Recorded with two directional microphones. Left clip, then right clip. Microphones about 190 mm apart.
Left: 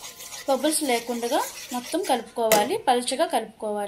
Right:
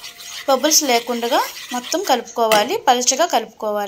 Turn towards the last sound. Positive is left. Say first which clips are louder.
# right 7 dB
turn(degrees=-15)  # may be behind; listen again after turning